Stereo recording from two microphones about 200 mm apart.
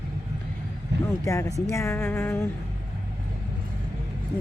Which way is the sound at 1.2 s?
15° left (ahead or behind).